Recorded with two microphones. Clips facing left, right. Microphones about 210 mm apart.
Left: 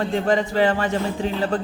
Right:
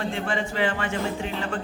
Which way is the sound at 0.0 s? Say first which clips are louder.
Left 7 dB; 40° left (ahead or behind).